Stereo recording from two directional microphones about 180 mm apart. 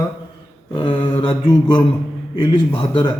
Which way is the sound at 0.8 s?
25° left (ahead or behind).